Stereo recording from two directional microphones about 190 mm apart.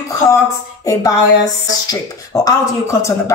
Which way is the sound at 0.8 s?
20° left (ahead or behind).